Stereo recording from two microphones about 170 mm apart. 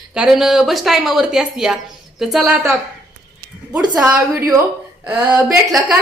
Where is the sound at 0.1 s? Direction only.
5° right (ahead or behind).